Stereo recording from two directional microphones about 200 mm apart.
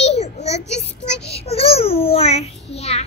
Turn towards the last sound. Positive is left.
turn(degrees=30)  # may be behind; listen again after turning